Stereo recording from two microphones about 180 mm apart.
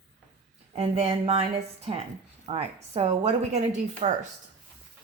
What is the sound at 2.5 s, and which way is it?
A woman's voice, 35° right (ahead or behind).